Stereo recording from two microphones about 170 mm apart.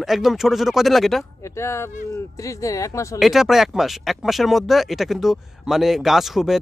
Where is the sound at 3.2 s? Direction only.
Centre (ahead or behind).